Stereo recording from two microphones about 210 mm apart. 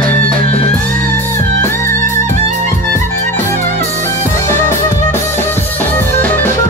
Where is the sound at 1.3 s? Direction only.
10° left (ahead or behind).